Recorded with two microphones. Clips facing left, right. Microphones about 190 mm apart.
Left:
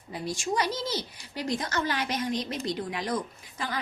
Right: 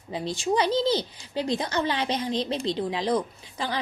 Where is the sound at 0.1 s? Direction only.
30° right (ahead or behind).